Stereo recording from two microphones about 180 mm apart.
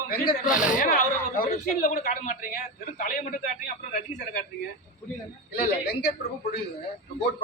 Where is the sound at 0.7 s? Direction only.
50° left (ahead or behind).